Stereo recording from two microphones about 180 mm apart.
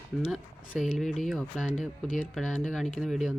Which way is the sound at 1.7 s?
45° left (ahead or behind).